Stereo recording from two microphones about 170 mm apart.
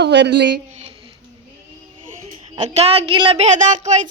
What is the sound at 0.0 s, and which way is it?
Speech, 90° right.